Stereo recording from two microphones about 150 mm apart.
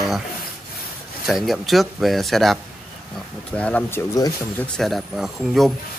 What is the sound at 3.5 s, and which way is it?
Speech, 10° left (ahead or behind).